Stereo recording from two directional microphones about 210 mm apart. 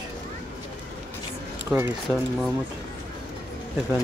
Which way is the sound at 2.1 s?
10° right (ahead or behind).